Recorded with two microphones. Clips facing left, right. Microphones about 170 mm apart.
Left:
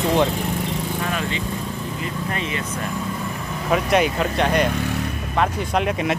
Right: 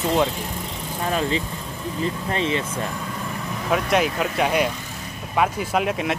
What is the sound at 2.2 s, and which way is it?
Speech, 30° right (ahead or behind).